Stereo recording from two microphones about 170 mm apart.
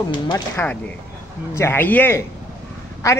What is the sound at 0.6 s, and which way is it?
A man's voice, 10° left (ahead or behind).